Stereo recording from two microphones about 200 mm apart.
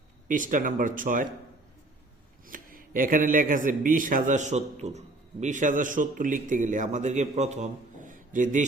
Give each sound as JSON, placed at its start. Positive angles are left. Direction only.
{"t": 0.3, "sound": "speech", "side_deg": -40}
{"t": 2.5, "sound": "speech", "side_deg": -45}